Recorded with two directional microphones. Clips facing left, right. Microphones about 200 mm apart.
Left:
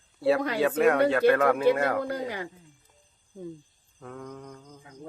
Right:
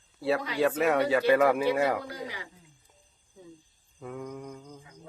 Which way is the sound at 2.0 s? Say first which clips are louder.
Left 7 dB; 55° left (ahead or behind).